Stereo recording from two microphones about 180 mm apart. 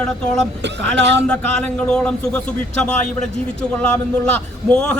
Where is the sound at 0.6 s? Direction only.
80° right.